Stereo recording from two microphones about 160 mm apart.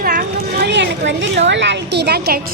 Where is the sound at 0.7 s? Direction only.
90° right.